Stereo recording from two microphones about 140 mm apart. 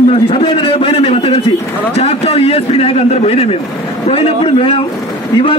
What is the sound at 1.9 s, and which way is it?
A man's voice, 45° left (ahead or behind).